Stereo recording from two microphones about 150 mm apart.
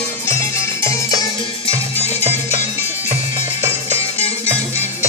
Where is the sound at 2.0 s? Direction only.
45° left (ahead or behind).